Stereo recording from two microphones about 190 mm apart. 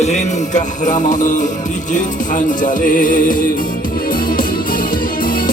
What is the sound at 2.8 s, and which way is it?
Music, 45° left (ahead or behind).